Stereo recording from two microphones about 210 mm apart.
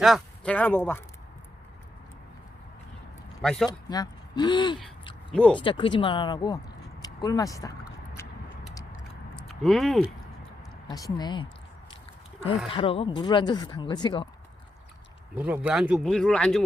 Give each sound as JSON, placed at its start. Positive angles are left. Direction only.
{"t": 0.0, "sound": "speech", "side_deg": 0}
{"t": 3.4, "sound": "speech", "side_deg": 5}
{"t": 3.7, "sound": "speech", "side_deg": 20}
{"t": 5.3, "sound": "speech", "side_deg": 5}
{"t": 5.5, "sound": "speech", "side_deg": 25}
{"t": 7.0, "sound": "a sound", "side_deg": 15}
{"t": 9.3, "sound": "a sound", "side_deg": 0}
{"t": 10.8, "sound": "speech", "side_deg": 20}
{"t": 12.6, "sound": "speech", "side_deg": 25}
{"t": 15.4, "sound": "speech", "side_deg": -10}